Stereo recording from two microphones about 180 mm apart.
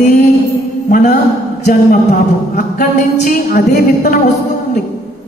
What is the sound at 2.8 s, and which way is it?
A woman's voice, 50° left (ahead or behind).